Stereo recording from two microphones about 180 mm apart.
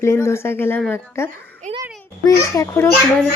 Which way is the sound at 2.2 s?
15° left (ahead or behind).